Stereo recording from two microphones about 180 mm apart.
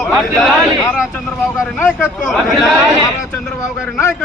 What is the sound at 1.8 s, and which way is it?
Speech, 5° left (ahead or behind).